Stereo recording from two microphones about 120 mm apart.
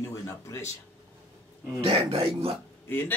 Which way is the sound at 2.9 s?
15° left (ahead or behind).